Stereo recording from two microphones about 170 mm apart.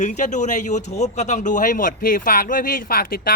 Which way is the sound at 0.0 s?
45° left (ahead or behind).